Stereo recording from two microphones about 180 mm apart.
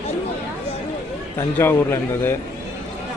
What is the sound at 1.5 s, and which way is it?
Speech, 10° left (ahead or behind).